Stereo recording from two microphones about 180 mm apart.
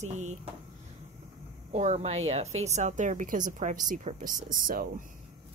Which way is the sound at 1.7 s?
40° right (ahead or behind).